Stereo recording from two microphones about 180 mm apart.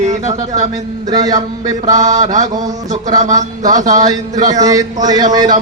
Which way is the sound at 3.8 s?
20° right (ahead or behind).